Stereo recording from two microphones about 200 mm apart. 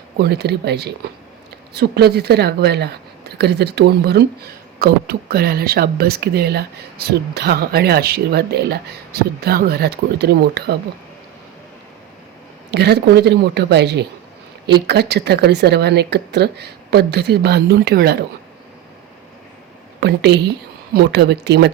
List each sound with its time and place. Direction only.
0.2 s a woman's voice: 55° right (ahead or behind)
12.7 s a woman's voice: 55° right (ahead or behind)
20.0 s a woman's voice: 55° right (ahead or behind)